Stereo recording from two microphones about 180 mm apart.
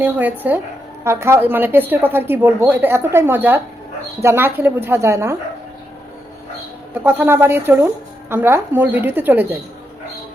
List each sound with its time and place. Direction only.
0.0 s speech: 10° right (ahead or behind)
7.0 s speech: 10° right (ahead or behind)